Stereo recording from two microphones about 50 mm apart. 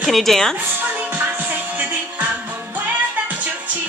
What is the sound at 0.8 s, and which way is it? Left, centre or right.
Music, right.